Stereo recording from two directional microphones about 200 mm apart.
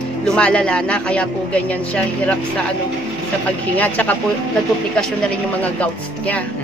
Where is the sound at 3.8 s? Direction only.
10° left (ahead or behind).